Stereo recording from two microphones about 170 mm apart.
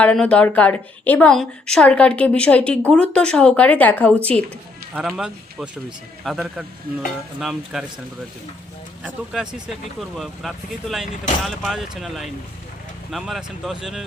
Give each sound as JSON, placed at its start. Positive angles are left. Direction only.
{"t": 0.0, "sound": "a woman's voice", "side_deg": 5}
{"t": 4.9, "sound": "speech", "side_deg": -5}
{"t": 9.0, "sound": "speech", "side_deg": -5}